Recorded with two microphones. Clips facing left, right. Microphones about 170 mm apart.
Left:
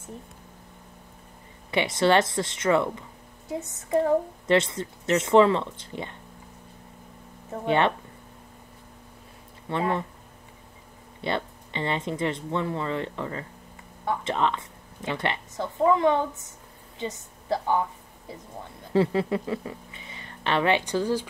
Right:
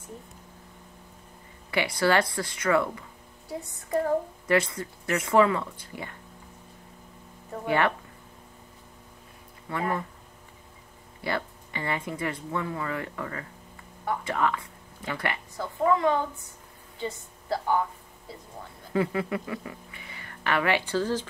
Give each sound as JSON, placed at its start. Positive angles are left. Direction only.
{"t": 1.7, "sound": "speech", "side_deg": 25}
{"t": 7.6, "sound": "speech", "side_deg": 25}
{"t": 9.7, "sound": "speech", "side_deg": 25}
{"t": 11.1, "sound": "a woman's voice", "side_deg": 25}
{"t": 18.9, "sound": "speech", "side_deg": 25}